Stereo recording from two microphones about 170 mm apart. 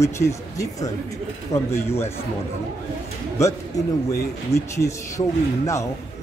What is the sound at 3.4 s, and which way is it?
Speech, 15° left (ahead or behind).